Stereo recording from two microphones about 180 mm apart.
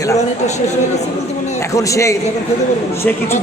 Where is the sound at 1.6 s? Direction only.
15° left (ahead or behind).